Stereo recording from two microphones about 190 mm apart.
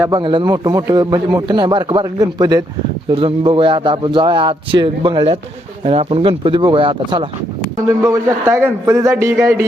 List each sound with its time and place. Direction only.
0.1 s speech: 25° right (ahead or behind)
7.9 s a man's voice: 15° right (ahead or behind)